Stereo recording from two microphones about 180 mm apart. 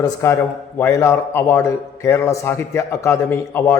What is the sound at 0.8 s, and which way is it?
Speech, 15° left (ahead or behind).